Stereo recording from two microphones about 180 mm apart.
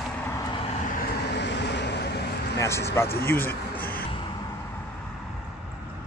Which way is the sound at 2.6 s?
15° left (ahead or behind).